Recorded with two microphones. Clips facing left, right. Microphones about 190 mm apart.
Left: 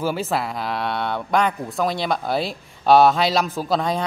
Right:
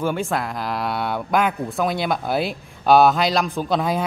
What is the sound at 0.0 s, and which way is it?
Speech, 5° left (ahead or behind).